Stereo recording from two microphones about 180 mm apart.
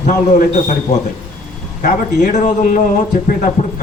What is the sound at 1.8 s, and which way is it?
Speech, 45° left (ahead or behind).